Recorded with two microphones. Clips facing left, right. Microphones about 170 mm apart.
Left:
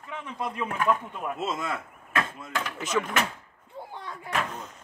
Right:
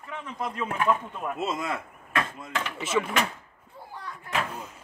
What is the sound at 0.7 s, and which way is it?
Speech, 10° right (ahead or behind).